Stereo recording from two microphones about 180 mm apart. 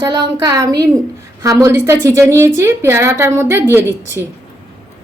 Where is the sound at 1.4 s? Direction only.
15° right (ahead or behind).